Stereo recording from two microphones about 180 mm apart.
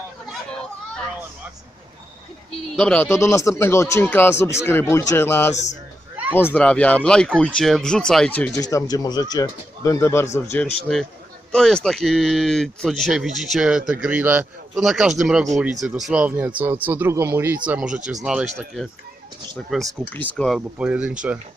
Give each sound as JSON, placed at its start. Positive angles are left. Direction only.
{"t": 2.6, "sound": "speech", "side_deg": 5}
{"t": 8.6, "sound": "speech", "side_deg": 20}
{"t": 10.9, "sound": "speech", "side_deg": 0}